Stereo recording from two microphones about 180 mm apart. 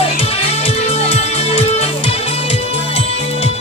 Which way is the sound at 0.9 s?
35° left (ahead or behind).